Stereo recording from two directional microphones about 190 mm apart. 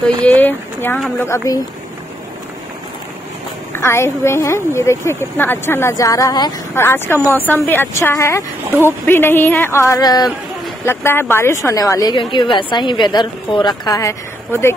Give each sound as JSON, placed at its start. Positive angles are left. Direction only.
{"t": 0.2, "sound": "a woman's voice", "side_deg": 10}
{"t": 3.7, "sound": "a woman's voice", "side_deg": 15}